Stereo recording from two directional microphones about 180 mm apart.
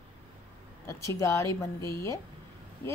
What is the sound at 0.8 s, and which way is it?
A woman's voice, 15° left (ahead or behind).